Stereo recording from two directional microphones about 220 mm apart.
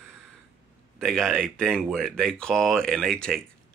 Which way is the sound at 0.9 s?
Centre (ahead or behind).